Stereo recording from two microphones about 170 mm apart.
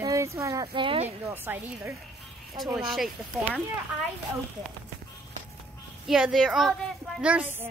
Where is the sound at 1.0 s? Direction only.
10° right (ahead or behind).